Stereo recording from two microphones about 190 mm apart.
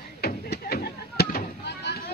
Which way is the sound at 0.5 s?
55° left (ahead or behind).